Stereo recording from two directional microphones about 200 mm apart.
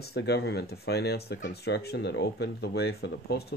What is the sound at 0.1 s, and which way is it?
Speech, 55° left (ahead or behind).